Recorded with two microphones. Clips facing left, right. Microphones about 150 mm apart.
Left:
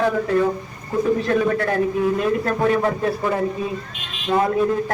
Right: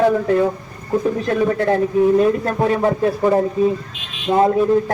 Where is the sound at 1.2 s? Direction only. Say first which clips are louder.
Right 2 dB; 25° right (ahead or behind).